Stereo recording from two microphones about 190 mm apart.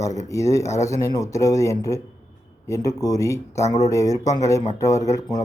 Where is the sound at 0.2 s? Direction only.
15° left (ahead or behind).